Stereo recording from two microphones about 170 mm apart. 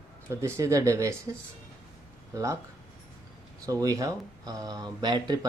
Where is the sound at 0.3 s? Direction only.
15° right (ahead or behind).